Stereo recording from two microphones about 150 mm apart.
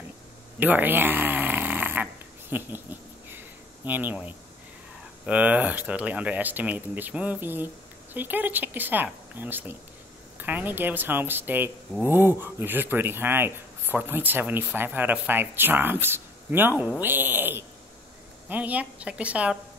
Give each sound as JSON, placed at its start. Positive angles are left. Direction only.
{"t": 0.6, "sound": "snoring", "side_deg": -10}
{"t": 2.5, "sound": "a sound", "side_deg": -15}
{"t": 5.2, "sound": "speech", "side_deg": -10}